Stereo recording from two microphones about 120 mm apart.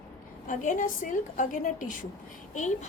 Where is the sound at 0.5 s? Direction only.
90° left.